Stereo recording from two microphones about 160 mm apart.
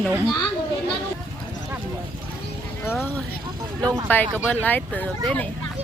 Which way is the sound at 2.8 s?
15° left (ahead or behind).